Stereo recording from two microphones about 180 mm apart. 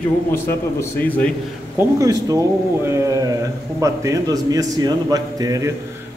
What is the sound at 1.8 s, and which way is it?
A man's voice, 20° right (ahead or behind).